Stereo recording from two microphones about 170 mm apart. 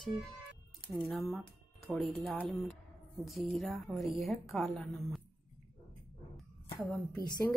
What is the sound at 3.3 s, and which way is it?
Speech, centre (ahead or behind).